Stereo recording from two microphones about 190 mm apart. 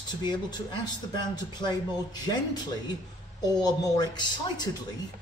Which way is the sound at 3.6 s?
20° left (ahead or behind).